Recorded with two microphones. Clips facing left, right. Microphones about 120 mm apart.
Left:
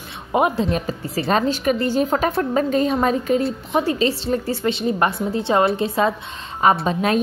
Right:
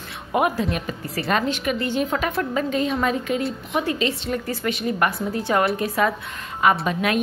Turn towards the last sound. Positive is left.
turn(degrees=30)  # may be behind; listen again after turning